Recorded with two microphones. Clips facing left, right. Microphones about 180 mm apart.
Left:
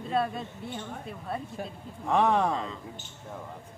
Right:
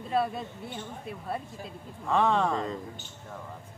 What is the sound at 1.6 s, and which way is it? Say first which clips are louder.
Speech: left 5 dB; 60° left (ahead or behind).